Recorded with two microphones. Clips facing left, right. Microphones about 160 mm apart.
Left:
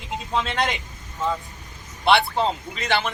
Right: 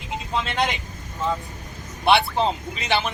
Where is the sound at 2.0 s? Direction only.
20° right (ahead or behind).